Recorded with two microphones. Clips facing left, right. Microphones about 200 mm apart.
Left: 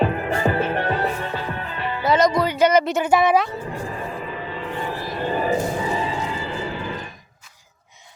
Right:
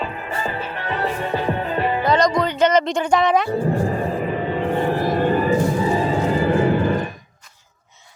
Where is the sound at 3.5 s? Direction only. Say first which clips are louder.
Right 9 dB; 45° right (ahead or behind).